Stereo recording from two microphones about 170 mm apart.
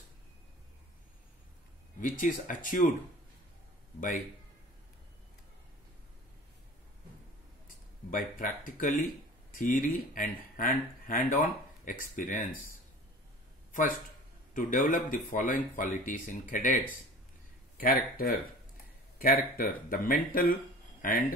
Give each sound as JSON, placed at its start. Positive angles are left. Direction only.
{"t": 2.0, "sound": "speech", "side_deg": 50}
{"t": 8.1, "sound": "speech", "side_deg": 55}
{"t": 14.5, "sound": "speech", "side_deg": 50}